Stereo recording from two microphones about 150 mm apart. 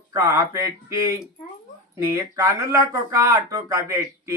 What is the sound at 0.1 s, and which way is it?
Speech, 20° right (ahead or behind).